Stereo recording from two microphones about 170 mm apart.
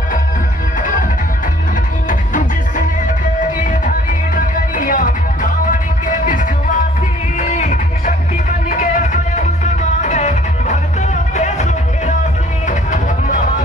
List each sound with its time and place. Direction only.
3.3 s music: 50° left (ahead or behind)